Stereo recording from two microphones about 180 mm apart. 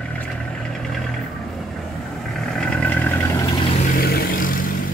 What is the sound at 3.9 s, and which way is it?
Vehicle, 55° left (ahead or behind).